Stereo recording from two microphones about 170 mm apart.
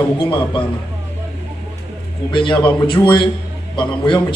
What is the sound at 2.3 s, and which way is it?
A man's voice, 30° left (ahead or behind).